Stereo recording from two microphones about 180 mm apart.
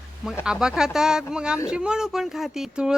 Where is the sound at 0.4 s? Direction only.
5° right (ahead or behind).